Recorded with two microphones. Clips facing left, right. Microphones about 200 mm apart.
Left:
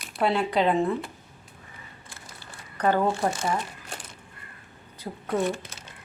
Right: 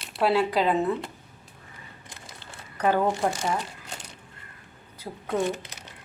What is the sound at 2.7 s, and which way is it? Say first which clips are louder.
Speech: even; 10° right (ahead or behind).